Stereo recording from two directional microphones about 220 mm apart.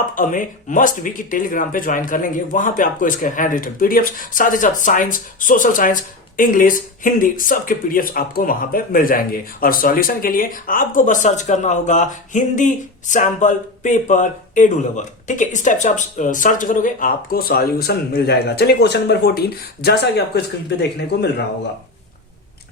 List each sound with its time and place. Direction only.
0.1 s speech: 35° left (ahead or behind)